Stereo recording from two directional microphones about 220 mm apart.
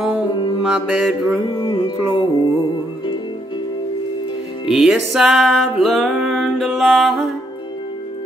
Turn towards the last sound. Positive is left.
turn(degrees=0)  # may be behind; listen again after turning